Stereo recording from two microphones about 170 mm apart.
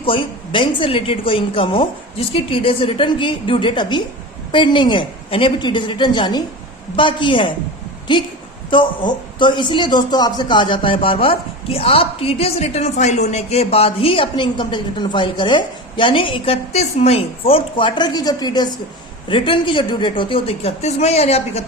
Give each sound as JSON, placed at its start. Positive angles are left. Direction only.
{"t": 0.0, "sound": "a woman's voice", "side_deg": 30}
{"t": 8.7, "sound": "a woman's voice", "side_deg": 30}